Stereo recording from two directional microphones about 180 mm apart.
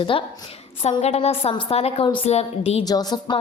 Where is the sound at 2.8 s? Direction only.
20° left (ahead or behind).